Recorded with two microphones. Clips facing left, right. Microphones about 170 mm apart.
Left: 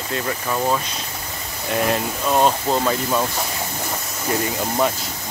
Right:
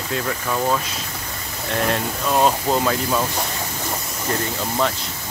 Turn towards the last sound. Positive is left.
turn(degrees=10)  # may be behind; listen again after turning